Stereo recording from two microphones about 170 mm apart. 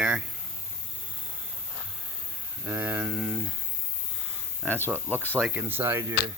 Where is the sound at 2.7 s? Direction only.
10° right (ahead or behind).